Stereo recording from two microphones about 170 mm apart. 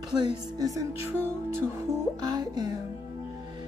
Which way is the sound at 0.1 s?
25° right (ahead or behind).